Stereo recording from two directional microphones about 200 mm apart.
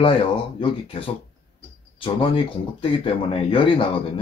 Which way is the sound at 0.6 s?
25° left (ahead or behind).